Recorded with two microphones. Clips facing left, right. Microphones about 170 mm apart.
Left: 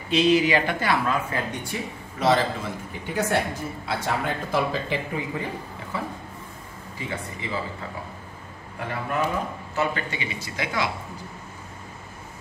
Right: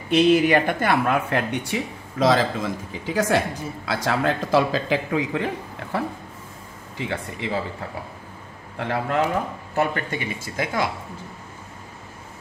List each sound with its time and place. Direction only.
0.1 s speech: 55° right (ahead or behind); by 5.5 s 80° right
5.9 s speech: 70° right (ahead or behind)
8.7 s speech: 75° right (ahead or behind)
9.8 s speech: 50° right (ahead or behind)